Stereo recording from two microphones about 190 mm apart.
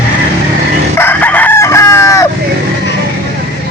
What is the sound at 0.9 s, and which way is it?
Chicken, 10° left (ahead or behind).